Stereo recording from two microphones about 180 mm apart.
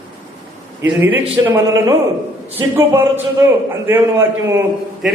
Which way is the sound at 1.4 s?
20° right (ahead or behind).